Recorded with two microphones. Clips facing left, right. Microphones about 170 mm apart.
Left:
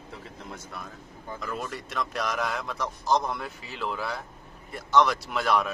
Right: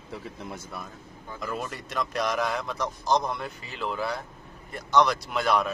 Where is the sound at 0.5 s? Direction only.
5° right (ahead or behind).